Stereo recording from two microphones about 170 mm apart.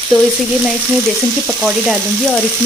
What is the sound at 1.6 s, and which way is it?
Speech, 5° left (ahead or behind).